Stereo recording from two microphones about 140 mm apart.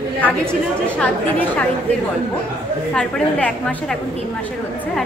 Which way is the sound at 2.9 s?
5° left (ahead or behind).